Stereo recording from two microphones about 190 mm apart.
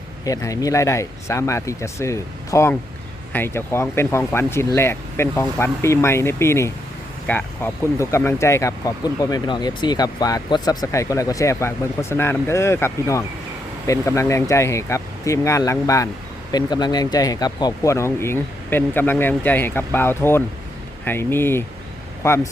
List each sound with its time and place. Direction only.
0.3 s speech: 20° left (ahead or behind)